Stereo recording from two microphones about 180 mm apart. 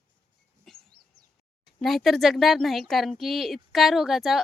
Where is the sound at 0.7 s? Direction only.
Centre (ahead or behind).